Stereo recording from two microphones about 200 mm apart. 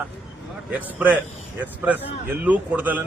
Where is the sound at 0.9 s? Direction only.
5° right (ahead or behind).